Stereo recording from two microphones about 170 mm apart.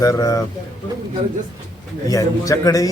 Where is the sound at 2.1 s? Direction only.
20° left (ahead or behind).